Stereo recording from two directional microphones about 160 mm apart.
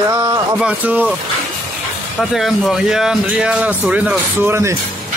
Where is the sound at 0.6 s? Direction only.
5° right (ahead or behind).